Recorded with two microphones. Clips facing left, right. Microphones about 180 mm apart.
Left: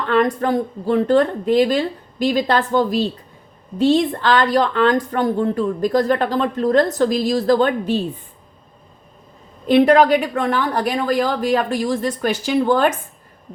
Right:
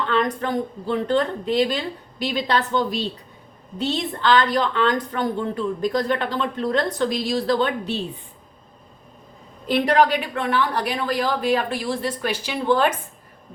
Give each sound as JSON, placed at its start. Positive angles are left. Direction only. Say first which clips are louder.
{"t": 0.1, "sound": "speech", "louder": "left 8 dB", "side_deg": 45}
{"t": 9.6, "sound": "speech", "louder": "left 6 dB", "side_deg": 50}